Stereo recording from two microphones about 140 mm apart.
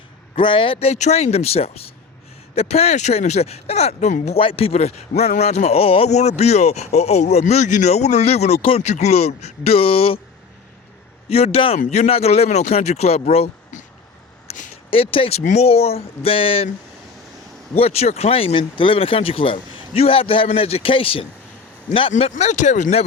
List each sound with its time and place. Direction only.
0.3 s speech: 35° left (ahead or behind); by 4.4 s 55° left (ahead or behind)
4.4 s speech: 40° left (ahead or behind)
11.3 s speech: 45° left (ahead or behind)
14.4 s a sound: 65° left (ahead or behind)
14.8 s speech: 40° left (ahead or behind)
17.7 s speech: 45° left (ahead or behind)
22.1 s speech: 55° left (ahead or behind)